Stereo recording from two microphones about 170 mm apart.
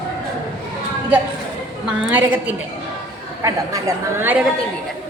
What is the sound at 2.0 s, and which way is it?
A woman's voice, 10° right (ahead or behind).